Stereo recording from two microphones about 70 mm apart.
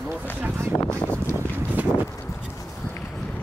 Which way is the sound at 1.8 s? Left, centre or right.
Right.